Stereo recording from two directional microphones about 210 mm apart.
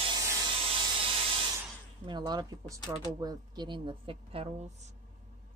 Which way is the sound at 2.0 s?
20° right (ahead or behind).